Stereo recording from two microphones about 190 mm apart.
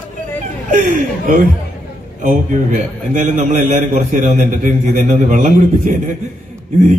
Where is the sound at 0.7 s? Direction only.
45° right (ahead or behind).